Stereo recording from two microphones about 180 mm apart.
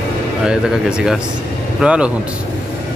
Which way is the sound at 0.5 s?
5° right (ahead or behind).